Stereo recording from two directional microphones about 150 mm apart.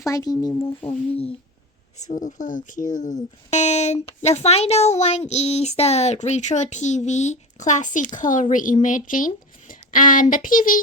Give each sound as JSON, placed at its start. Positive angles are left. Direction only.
{"t": 0.0, "sound": "speech", "side_deg": 20}
{"t": 1.1, "sound": "speech", "side_deg": 40}
{"t": 2.0, "sound": "speech", "side_deg": 55}